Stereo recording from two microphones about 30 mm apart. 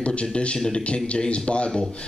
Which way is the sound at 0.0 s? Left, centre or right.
Left.